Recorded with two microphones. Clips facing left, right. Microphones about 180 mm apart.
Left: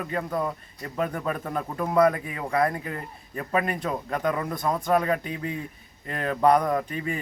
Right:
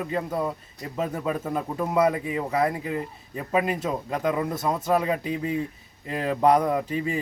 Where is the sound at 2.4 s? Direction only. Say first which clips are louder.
Left 1 dB; 5° right (ahead or behind).